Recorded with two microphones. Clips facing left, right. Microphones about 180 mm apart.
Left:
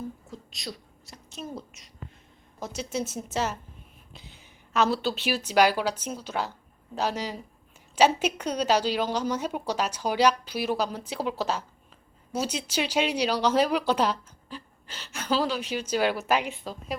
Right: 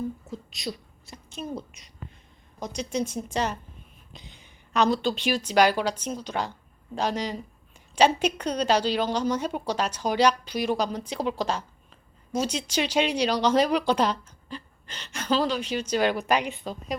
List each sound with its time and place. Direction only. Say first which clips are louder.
0.3 s a woman's voice: right 5 dB; centre (ahead or behind)